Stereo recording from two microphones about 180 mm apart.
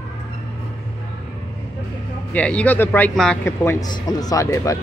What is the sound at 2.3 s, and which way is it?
A man's voice, 5° left (ahead or behind).